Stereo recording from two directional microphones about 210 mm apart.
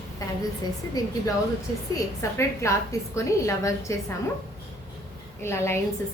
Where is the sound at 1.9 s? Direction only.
15° left (ahead or behind).